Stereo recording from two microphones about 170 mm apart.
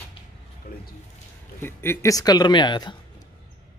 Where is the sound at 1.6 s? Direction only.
15° left (ahead or behind).